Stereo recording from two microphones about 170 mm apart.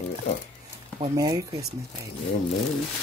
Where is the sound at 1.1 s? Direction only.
20° right (ahead or behind).